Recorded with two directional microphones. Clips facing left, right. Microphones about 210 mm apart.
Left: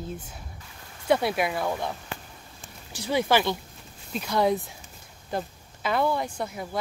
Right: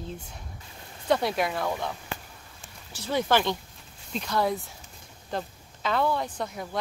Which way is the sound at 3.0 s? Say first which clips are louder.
Left 1 dB; 10° left (ahead or behind).